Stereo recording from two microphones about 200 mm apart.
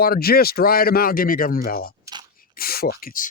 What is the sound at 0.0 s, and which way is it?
Speech, 50° left (ahead or behind).